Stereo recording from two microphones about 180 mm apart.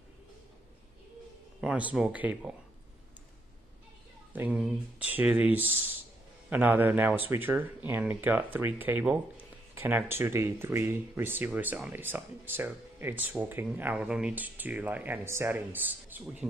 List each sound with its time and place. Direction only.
1.6 s speech: 5° right (ahead or behind)
4.3 s speech: 10° right (ahead or behind)